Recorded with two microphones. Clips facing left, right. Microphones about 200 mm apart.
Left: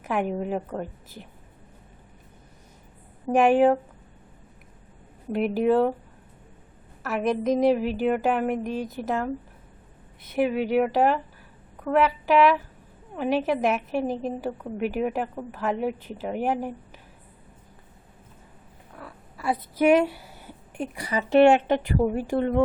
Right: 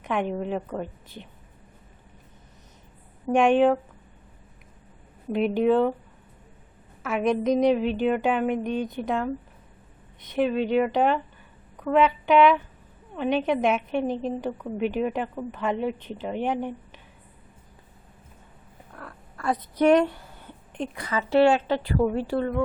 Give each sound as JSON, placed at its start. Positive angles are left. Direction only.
{"t": 0.0, "sound": "a woman's voice", "side_deg": 5}
{"t": 3.3, "sound": "a woman's voice", "side_deg": 5}
{"t": 5.3, "sound": "a woman's voice", "side_deg": 5}
{"t": 7.0, "sound": "a woman's voice", "side_deg": 0}
{"t": 18.9, "sound": "a sound", "side_deg": 5}
{"t": 21.7, "sound": "a woman's voice", "side_deg": 15}